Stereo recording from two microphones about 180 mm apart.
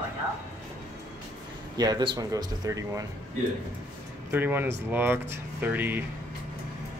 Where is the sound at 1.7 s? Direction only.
25° right (ahead or behind).